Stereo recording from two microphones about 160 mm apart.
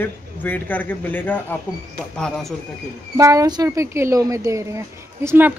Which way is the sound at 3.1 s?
20° right (ahead or behind).